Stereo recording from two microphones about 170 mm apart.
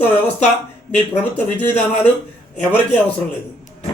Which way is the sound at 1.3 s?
10° left (ahead or behind).